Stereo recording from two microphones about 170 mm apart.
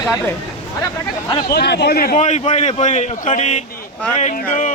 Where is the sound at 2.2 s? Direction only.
40° left (ahead or behind).